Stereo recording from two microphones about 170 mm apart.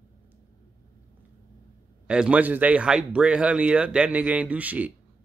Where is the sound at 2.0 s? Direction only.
5° right (ahead or behind).